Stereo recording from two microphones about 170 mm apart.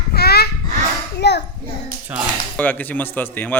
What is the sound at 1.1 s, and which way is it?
Hands, 75° left (ahead or behind).